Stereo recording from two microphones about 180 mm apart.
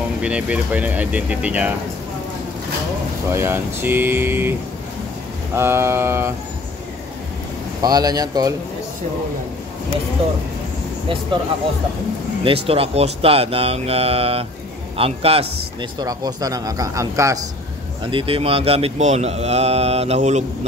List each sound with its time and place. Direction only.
0.2 s speech: 5° right (ahead or behind)
3.3 s speech: 15° right (ahead or behind)
5.6 s speech: 15° right (ahead or behind)
7.8 s a man's voice: 20° right (ahead or behind)
10.2 s speech: 35° right (ahead or behind)
12.4 s a man's voice: 30° right (ahead or behind)
18.1 s speech: 30° right (ahead or behind)